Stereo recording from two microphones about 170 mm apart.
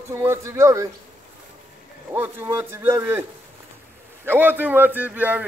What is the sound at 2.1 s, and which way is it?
A man's voice, 15° right (ahead or behind).